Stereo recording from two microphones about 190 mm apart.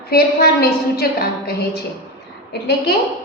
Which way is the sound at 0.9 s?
55° left (ahead or behind).